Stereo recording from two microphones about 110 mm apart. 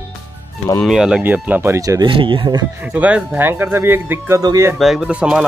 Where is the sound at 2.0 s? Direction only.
50° right (ahead or behind).